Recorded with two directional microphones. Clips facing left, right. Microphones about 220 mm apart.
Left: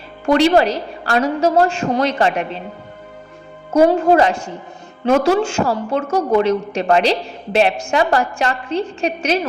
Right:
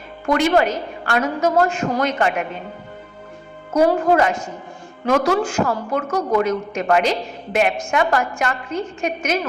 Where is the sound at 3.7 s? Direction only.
30° left (ahead or behind).